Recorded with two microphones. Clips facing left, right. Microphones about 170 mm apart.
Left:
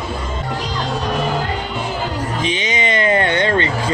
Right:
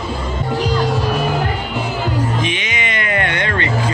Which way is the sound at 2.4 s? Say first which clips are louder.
Left 2 dB; 35° left (ahead or behind).